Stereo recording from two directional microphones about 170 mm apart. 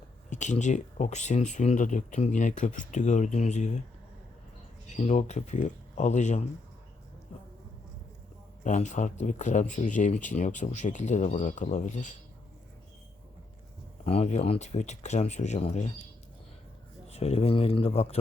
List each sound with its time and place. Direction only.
0.3 s speech: 45° left (ahead or behind)
4.9 s speech: 45° left (ahead or behind)
8.6 s speech: 45° left (ahead or behind)
14.0 s speech: 35° left (ahead or behind)
17.1 s speech: 35° left (ahead or behind)